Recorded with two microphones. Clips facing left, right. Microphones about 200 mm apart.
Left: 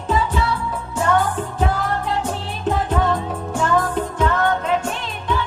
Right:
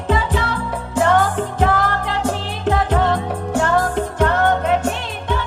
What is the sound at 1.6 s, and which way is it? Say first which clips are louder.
Music: right 4 dB; 80° right.